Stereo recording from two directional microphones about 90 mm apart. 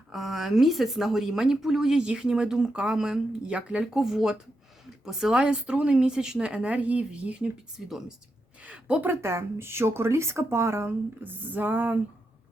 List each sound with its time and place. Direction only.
0.1 s a woman's voice: centre (ahead or behind)
9.0 s speech: 30° right (ahead or behind)